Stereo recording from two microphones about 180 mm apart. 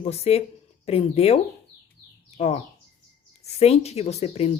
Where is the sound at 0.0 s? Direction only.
35° left (ahead or behind).